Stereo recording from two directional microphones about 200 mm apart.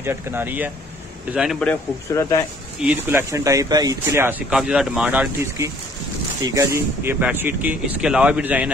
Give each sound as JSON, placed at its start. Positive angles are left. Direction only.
{"t": 0.0, "sound": "a man's voice", "side_deg": -10}
{"t": 1.6, "sound": "a man's voice", "side_deg": 5}
{"t": 2.9, "sound": "speech", "side_deg": -10}